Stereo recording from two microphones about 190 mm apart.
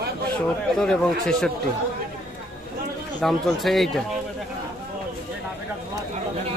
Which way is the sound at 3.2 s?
Centre (ahead or behind).